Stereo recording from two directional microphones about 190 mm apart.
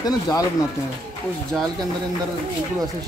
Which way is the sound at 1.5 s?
Centre (ahead or behind).